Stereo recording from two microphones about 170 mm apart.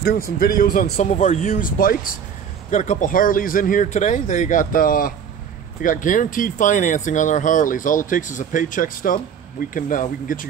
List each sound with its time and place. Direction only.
0.0 s speech: 60° left (ahead or behind)
0.9 s speech: 40° left (ahead or behind)